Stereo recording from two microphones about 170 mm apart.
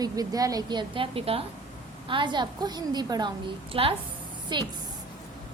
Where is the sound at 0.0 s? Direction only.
20° right (ahead or behind).